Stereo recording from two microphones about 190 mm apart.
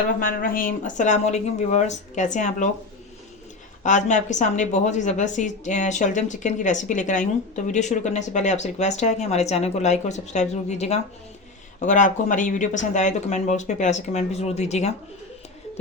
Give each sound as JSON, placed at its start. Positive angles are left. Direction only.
{"t": 0.2, "sound": "a woman's voice", "side_deg": 45}
{"t": 3.8, "sound": "a woman's voice", "side_deg": 40}